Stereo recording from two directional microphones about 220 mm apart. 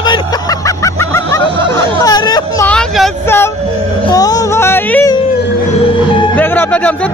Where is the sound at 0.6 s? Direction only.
15° left (ahead or behind).